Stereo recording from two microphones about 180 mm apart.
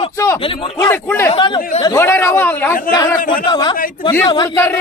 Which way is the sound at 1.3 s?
30° left (ahead or behind).